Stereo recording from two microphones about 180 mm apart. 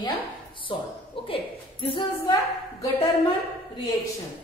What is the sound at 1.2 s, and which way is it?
Speech, 30° left (ahead or behind).